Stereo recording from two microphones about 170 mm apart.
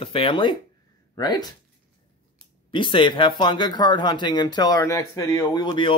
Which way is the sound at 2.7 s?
30° left (ahead or behind).